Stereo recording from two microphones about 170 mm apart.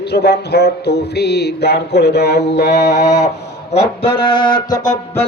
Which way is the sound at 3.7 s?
40° left (ahead or behind).